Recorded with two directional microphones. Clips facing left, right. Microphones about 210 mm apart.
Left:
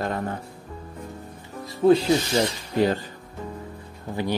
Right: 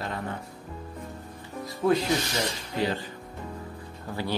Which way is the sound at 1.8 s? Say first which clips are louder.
Left 7 dB; 20° left (ahead or behind).